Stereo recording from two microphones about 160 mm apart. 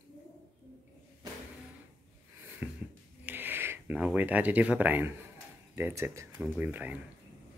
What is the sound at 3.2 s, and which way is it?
Speech, 10° right (ahead or behind).